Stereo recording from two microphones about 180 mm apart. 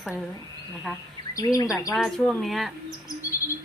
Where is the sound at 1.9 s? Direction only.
Centre (ahead or behind).